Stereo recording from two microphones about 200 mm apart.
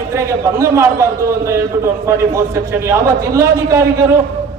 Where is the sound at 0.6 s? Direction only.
15° right (ahead or behind).